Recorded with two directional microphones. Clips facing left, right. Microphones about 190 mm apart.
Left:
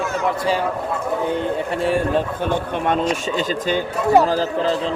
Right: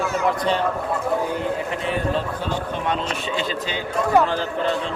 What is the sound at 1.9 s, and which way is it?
Speech, 50° left (ahead or behind).